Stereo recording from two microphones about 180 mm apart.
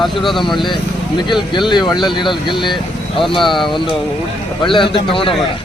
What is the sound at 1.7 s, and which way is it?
Speech, 25° left (ahead or behind).